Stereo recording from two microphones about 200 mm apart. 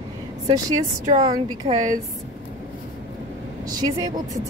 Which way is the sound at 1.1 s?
30° right (ahead or behind).